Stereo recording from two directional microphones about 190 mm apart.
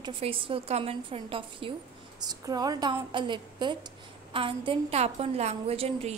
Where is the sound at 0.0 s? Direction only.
30° right (ahead or behind).